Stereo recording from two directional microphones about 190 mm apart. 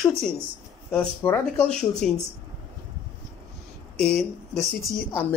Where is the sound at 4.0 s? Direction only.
Centre (ahead or behind).